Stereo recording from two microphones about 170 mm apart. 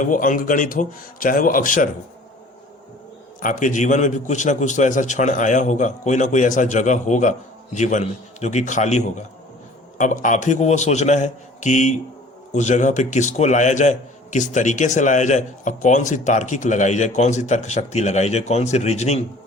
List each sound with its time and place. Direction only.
0.0 s a man's voice: 50° left (ahead or behind)
3.4 s a man's voice: 45° left (ahead or behind)